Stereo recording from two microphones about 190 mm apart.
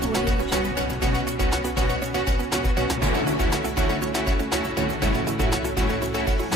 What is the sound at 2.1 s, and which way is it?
Music, centre (ahead or behind).